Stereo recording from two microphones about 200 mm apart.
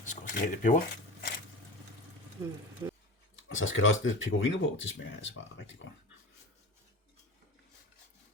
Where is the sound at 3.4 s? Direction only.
75° left (ahead or behind).